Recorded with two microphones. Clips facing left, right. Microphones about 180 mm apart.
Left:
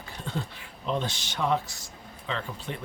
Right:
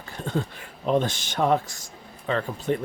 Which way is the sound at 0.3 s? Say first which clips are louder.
Right 7 dB; 50° right (ahead or behind).